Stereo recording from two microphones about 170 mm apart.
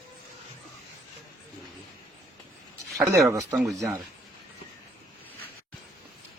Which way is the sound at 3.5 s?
Centre (ahead or behind).